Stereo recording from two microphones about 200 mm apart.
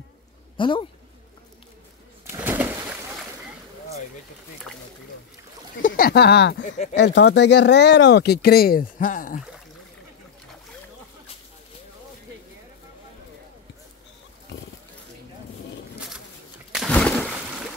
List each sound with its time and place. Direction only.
0.6 s speech: 25° left (ahead or behind)
2.2 s bird: 10° right (ahead or behind)
5.8 s speech: 45° left (ahead or behind)
6.6 s speech: 40° left (ahead or behind)
7.0 s speech: 60° left (ahead or behind); by 9.4 s 40° left (ahead or behind)
16.7 s a sound: 5° left (ahead or behind)